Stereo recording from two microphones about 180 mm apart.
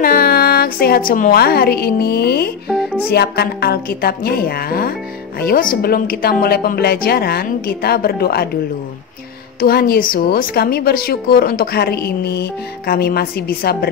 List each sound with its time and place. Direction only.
0.0 s a woman's voice: 55° left (ahead or behind)
2.7 s music: 5° right (ahead or behind)
3.1 s a woman's voice: 65° left (ahead or behind)
9.6 s a woman's voice: 60° left (ahead or behind)